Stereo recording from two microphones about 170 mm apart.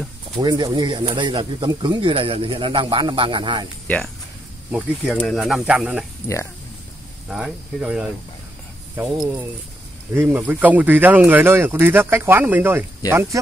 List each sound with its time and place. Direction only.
0.4 s speech: 25° right (ahead or behind)
3.8 s speech: 10° left (ahead or behind)
4.6 s speech: 10° right (ahead or behind)
7.2 s speech: 5° right (ahead or behind)